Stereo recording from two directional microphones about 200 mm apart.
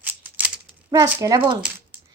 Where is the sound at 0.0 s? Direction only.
10° right (ahead or behind).